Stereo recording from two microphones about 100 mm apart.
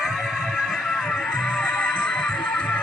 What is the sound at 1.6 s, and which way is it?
Music, 5° left (ahead or behind).